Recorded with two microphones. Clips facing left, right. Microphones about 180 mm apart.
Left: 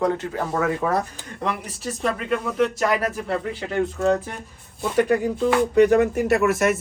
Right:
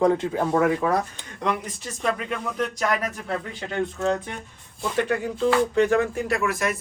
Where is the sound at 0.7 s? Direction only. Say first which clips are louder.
Even; centre (ahead or behind); by 6.4 s 20° left (ahead or behind).